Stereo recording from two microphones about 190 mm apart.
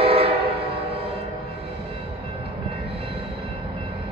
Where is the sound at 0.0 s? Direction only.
30° right (ahead or behind).